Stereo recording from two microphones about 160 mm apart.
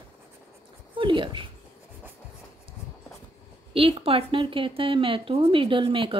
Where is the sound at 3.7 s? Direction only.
35° right (ahead or behind).